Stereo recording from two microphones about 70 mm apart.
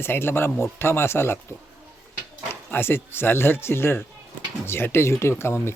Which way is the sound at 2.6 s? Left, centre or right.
Left.